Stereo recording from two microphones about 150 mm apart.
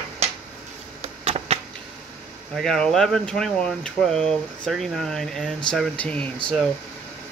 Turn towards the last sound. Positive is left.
turn(degrees=5)  # may be behind; listen again after turning